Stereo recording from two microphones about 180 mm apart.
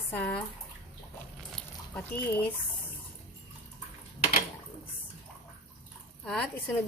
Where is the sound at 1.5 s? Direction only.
5° left (ahead or behind).